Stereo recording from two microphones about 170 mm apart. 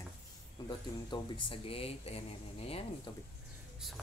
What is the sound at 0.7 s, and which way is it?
Speech, 25° left (ahead or behind).